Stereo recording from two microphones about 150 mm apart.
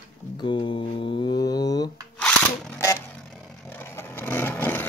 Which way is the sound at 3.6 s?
15° left (ahead or behind).